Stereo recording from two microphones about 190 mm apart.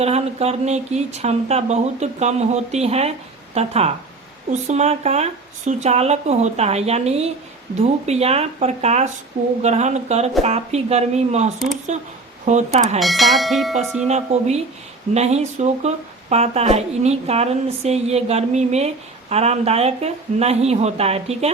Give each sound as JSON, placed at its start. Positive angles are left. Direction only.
{"t": 0.0, "sound": "speech", "side_deg": -35}
{"t": 13.0, "sound": "speech", "side_deg": 0}
{"t": 14.1, "sound": "speech", "side_deg": -35}